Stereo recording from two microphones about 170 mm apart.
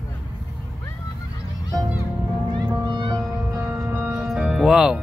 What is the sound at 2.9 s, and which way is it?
Music, 25° right (ahead or behind).